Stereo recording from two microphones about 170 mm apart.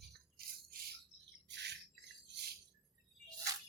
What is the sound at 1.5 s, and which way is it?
Bird, 90° right.